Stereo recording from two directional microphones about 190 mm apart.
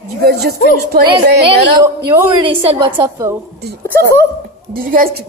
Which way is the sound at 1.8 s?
15° right (ahead or behind).